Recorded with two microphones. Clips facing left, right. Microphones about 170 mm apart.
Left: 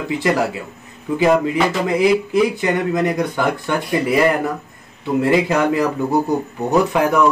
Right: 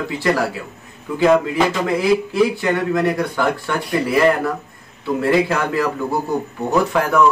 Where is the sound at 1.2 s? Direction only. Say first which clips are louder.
Right 1 dB; 15° left (ahead or behind).